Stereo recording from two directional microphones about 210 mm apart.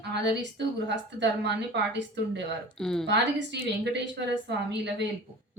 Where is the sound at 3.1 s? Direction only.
55° right (ahead or behind).